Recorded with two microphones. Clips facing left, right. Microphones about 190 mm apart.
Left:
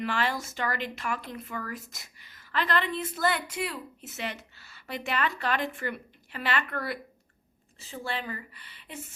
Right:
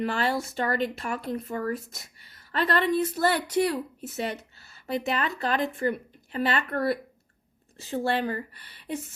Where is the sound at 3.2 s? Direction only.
30° right (ahead or behind).